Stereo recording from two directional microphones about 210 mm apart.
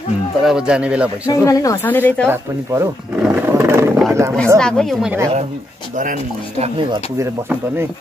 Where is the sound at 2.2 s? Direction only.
10° right (ahead or behind).